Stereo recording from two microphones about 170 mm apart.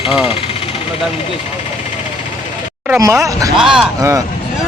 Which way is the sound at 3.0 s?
20° right (ahead or behind).